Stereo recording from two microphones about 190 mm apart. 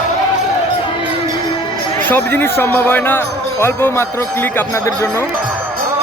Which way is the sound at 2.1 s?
10° left (ahead or behind).